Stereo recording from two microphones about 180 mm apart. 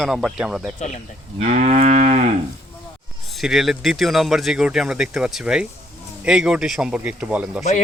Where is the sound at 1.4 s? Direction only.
40° right (ahead or behind).